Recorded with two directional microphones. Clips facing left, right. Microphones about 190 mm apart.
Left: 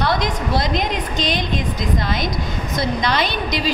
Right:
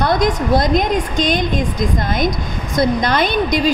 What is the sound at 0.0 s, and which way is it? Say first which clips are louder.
A woman's voice: right 5 dB; 50° right (ahead or behind).